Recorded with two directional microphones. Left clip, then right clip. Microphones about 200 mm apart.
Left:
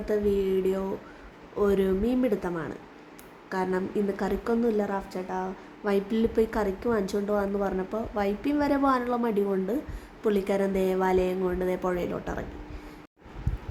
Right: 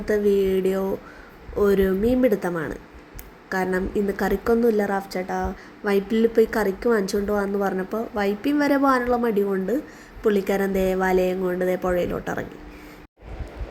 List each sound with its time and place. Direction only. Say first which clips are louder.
0.0 s a woman's voice: right 6 dB; 15° right (ahead or behind)